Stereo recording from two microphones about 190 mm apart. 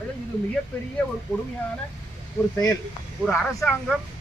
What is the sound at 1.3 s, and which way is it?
Speech, 20° left (ahead or behind).